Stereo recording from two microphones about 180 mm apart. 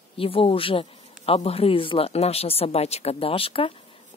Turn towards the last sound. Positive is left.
turn(degrees=30)  # may be behind; listen again after turning